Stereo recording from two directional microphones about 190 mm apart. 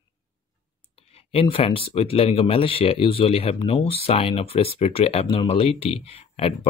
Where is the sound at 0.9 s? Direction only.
30° left (ahead or behind).